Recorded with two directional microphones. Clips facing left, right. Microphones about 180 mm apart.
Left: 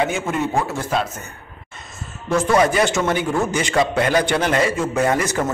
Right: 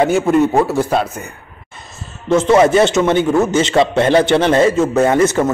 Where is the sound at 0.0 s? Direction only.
40° right (ahead or behind).